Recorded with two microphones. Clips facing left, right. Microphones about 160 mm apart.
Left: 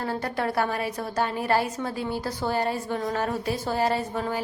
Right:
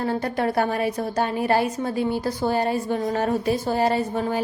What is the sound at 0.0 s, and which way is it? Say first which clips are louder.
A woman's voice: right 4 dB; 20° right (ahead or behind).